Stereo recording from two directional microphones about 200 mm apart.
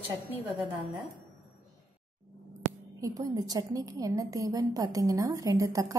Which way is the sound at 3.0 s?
15° right (ahead or behind).